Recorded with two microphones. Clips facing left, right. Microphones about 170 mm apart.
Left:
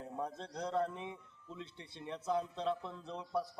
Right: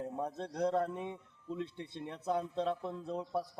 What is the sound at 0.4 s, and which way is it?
Speech, 55° right (ahead or behind).